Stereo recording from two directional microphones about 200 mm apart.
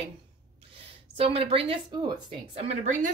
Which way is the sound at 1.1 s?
30° right (ahead or behind).